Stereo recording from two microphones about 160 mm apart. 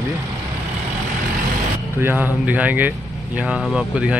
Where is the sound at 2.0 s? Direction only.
10° right (ahead or behind).